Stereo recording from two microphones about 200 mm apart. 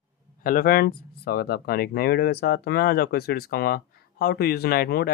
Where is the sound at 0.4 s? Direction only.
45° left (ahead or behind).